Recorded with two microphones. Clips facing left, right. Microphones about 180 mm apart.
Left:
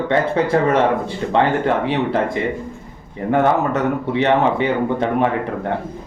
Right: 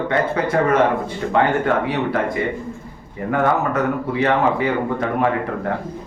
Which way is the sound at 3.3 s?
25° left (ahead or behind).